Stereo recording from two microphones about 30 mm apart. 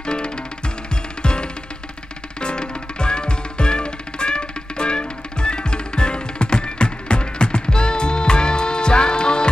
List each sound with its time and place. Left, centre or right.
0.0 s music: left